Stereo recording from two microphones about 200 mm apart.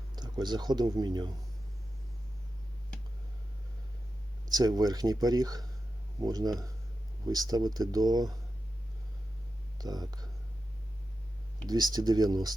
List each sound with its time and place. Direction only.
0.2 s speech: 20° right (ahead or behind)
4.4 s speech: 20° right (ahead or behind)
9.7 s speech: 20° right (ahead or behind)
11.6 s speech: 20° right (ahead or behind)